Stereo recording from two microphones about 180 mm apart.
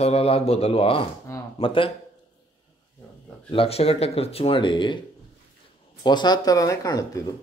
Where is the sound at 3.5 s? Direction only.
30° left (ahead or behind).